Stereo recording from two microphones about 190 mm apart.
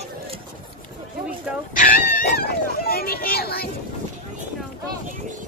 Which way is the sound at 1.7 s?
45° left (ahead or behind).